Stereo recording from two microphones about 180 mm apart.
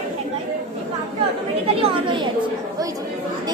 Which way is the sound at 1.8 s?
25° right (ahead or behind).